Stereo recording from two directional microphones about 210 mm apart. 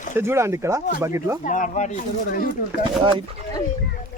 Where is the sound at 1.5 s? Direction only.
35° left (ahead or behind).